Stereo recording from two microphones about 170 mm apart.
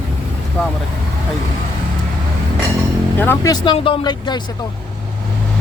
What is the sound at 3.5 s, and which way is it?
Speech, 30° left (ahead or behind).